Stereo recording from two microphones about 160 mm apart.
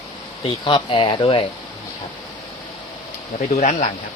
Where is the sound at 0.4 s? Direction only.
30° left (ahead or behind).